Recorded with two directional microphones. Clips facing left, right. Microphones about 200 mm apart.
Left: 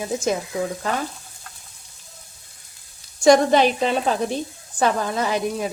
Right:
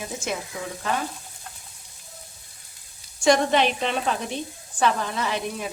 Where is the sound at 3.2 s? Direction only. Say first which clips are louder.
Left 5 dB; 40° left (ahead or behind).